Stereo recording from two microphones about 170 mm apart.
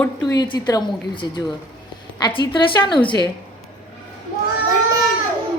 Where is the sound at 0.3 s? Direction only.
25° left (ahead or behind).